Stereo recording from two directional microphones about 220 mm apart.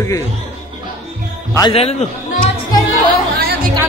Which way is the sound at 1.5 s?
25° left (ahead or behind).